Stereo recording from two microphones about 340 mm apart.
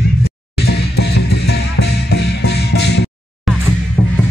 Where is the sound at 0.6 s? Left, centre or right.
Left.